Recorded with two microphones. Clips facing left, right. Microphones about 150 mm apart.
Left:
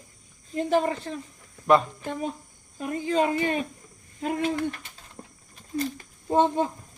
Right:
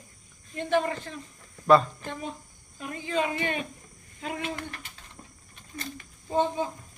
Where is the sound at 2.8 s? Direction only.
40° left (ahead or behind).